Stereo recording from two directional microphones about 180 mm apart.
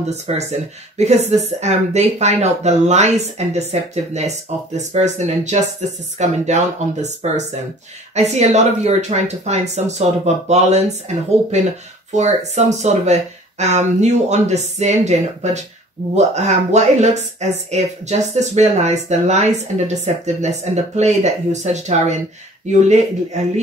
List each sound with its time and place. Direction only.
0.0 s speech: 40° right (ahead or behind)